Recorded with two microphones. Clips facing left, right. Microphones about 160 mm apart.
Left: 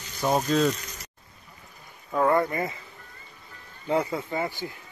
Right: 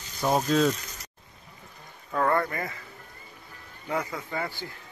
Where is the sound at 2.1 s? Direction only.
15° left (ahead or behind).